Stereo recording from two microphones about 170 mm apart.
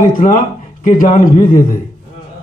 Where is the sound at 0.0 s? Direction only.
50° left (ahead or behind).